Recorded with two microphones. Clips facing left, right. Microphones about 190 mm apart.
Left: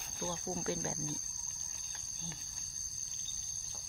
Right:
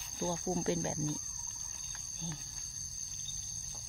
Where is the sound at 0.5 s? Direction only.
25° right (ahead or behind).